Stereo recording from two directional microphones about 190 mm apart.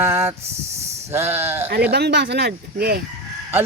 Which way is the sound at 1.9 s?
60° right (ahead or behind).